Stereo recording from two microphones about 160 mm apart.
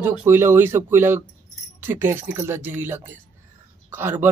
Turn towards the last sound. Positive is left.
turn(degrees=-10)  # may be behind; listen again after turning